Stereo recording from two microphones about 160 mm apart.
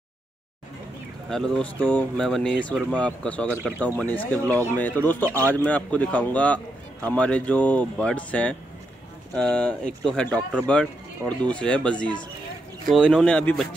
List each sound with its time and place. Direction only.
1.3 s a man's voice: 5° left (ahead or behind)
5.2 s a man's voice: 20° right (ahead or behind)
5.5 s a man's voice: 10° left (ahead or behind)